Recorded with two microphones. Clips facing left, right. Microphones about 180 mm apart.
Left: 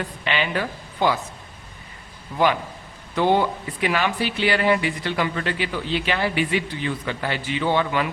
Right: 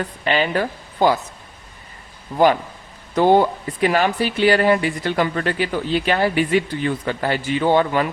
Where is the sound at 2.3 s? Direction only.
40° right (ahead or behind).